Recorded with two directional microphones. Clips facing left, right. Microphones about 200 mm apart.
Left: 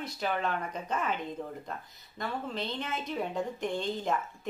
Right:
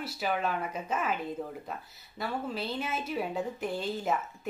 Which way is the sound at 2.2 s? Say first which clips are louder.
Right 1 dB; 5° right (ahead or behind).